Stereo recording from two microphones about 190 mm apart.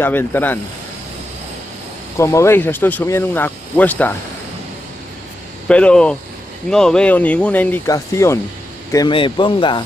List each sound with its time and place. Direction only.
0.0 s speech: 10° left (ahead or behind)
2.1 s speech: 15° left (ahead or behind)
5.7 s speech: 5° left (ahead or behind); by 9.8 s 25° left (ahead or behind)